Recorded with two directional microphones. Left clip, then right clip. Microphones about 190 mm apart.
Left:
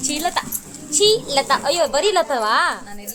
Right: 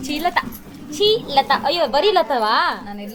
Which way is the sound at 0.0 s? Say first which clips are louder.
Right 2 dB; 5° right (ahead or behind).